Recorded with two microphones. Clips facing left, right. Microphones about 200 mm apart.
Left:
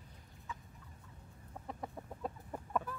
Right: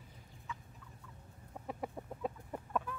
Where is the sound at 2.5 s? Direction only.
5° left (ahead or behind).